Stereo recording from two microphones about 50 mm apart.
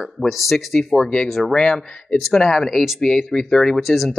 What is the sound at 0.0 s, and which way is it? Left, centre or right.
Speech, centre.